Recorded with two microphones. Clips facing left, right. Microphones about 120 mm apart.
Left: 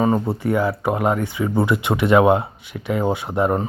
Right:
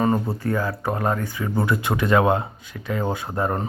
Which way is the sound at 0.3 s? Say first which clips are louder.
Left 4 dB; 20° left (ahead or behind).